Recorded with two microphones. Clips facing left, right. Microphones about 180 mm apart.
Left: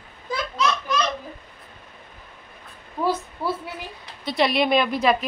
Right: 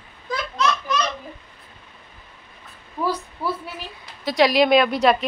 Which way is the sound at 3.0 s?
20° left (ahead or behind).